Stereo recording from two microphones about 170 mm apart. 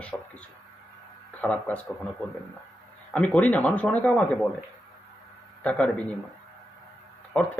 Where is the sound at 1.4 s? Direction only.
10° left (ahead or behind).